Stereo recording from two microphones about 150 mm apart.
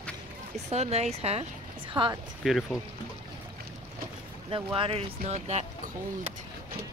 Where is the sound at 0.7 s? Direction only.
45° right (ahead or behind).